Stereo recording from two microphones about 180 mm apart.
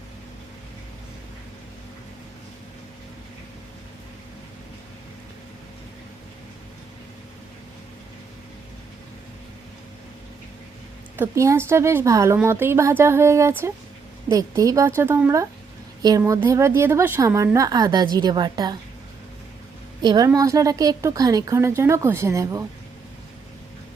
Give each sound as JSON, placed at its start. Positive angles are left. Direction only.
{"t": 11.2, "sound": "a woman's voice", "side_deg": -15}
{"t": 20.0, "sound": "a woman's voice", "side_deg": -20}